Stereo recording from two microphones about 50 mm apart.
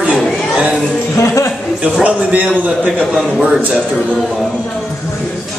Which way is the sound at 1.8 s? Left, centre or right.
Right.